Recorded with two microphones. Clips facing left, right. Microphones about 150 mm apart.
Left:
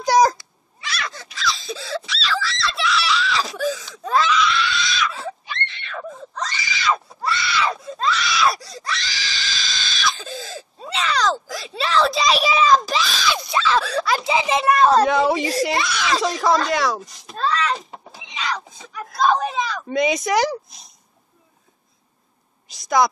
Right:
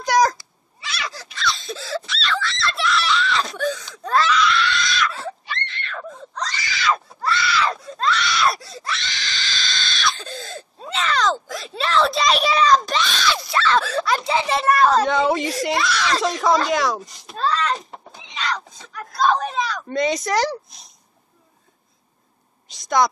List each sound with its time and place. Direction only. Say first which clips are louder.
0.0 s speech: left 2 dB; 25° left (ahead or behind)
0.7 s screaming: left 1 dB; centre (ahead or behind)
13.7 s giggle: even; centre (ahead or behind)
14.9 s a child's voice: left 2 dB; centre (ahead or behind)
22.7 s a sound: left 1 dB; centre (ahead or behind)